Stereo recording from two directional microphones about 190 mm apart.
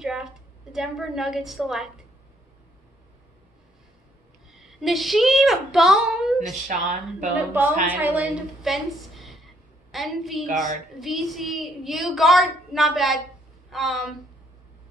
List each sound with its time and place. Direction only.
0.0 s a sound: 5° right (ahead or behind)
0.7 s a woman's voice: centre (ahead or behind)
4.5 s speech: centre (ahead or behind)
6.7 s speech: 45° right (ahead or behind)
7.3 s a woman's voice: 10° right (ahead or behind)